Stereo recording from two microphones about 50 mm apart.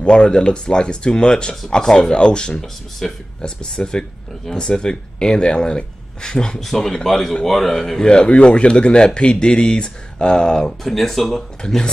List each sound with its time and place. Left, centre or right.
0.0 s speech: centre
11.6 s speech: centre